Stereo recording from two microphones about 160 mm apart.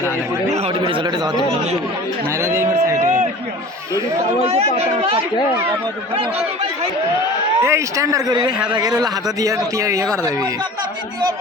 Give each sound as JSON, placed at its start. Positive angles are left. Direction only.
{"t": 0.5, "sound": "a man's voice", "side_deg": -30}
{"t": 2.4, "sound": "speech", "side_deg": -15}
{"t": 4.4, "sound": "speech", "side_deg": -40}
{"t": 7.6, "sound": "a man's voice", "side_deg": -15}